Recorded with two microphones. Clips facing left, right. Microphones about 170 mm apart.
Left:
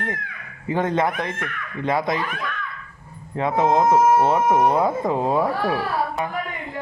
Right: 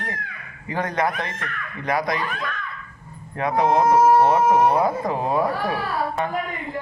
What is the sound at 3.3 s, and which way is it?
Speech, 20° left (ahead or behind).